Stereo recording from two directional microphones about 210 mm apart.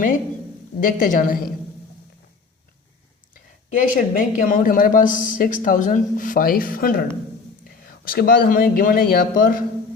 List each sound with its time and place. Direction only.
0.8 s speech: 40° left (ahead or behind)
3.7 s speech: 40° left (ahead or behind)